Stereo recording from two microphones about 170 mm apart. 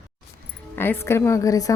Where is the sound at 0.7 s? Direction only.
10° left (ahead or behind).